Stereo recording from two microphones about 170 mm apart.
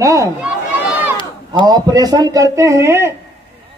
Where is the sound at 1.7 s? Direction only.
20° right (ahead or behind).